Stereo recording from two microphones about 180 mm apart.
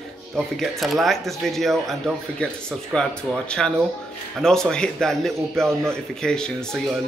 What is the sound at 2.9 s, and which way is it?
Speech, 5° left (ahead or behind).